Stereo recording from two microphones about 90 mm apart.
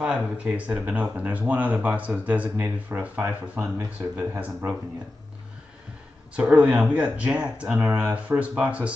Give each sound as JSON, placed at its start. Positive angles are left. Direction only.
{"t": 0.0, "sound": "speech", "side_deg": -15}
{"t": 4.4, "sound": "speech", "side_deg": -15}
{"t": 6.5, "sound": "speech", "side_deg": -15}